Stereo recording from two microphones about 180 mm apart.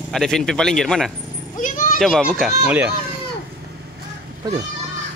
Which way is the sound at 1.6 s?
45° left (ahead or behind).